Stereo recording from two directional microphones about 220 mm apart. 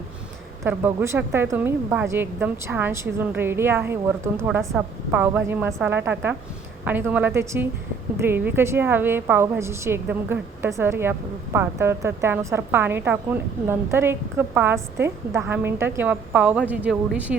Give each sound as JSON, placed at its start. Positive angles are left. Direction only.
{"t": 0.6, "sound": "a woman's voice", "side_deg": -10}